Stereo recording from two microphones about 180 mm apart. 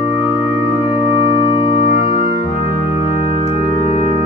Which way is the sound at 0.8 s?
30° left (ahead or behind).